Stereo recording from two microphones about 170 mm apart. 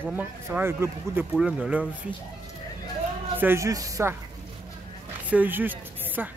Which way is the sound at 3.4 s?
15° right (ahead or behind).